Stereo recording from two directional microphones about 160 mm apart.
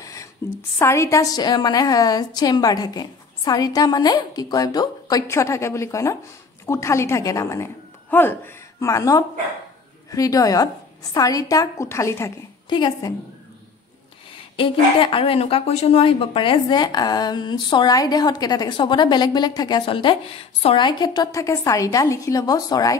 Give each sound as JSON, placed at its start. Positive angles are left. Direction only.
{"t": 0.0, "sound": "a sound", "side_deg": 20}
{"t": 0.7, "sound": "a woman's voice", "side_deg": 20}
{"t": 12.6, "sound": "speech", "side_deg": 30}
{"t": 14.6, "sound": "speech", "side_deg": 35}